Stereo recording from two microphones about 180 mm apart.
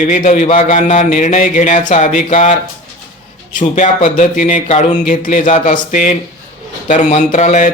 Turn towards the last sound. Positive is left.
turn(degrees=45)  # may be behind; listen again after turning